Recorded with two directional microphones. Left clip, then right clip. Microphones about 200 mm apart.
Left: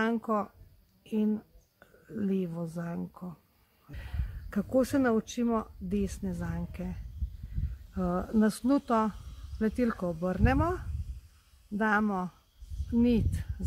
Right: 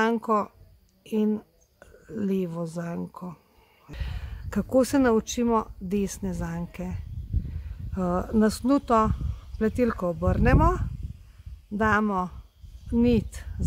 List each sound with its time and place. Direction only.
0.0 s speech: 30° right (ahead or behind)